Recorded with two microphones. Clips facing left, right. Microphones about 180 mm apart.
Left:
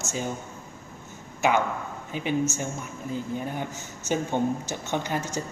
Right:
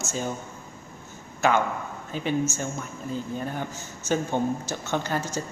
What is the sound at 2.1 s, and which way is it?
A man's voice, 15° left (ahead or behind).